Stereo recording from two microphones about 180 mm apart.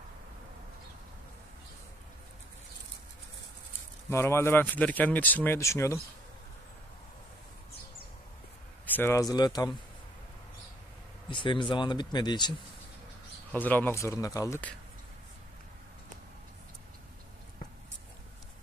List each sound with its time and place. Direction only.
4.1 s speech: 15° left (ahead or behind)
8.9 s speech: 15° left (ahead or behind)
11.2 s speech: 25° left (ahead or behind)
13.5 s speech: 10° left (ahead or behind)